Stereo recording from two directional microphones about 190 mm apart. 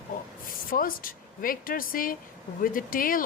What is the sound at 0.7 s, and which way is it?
Speech, 45° left (ahead or behind).